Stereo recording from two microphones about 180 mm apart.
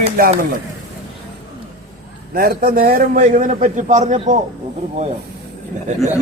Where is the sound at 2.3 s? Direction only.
55° right (ahead or behind).